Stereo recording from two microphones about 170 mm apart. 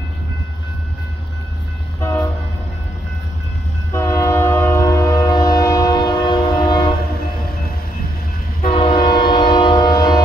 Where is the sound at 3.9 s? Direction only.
15° left (ahead or behind).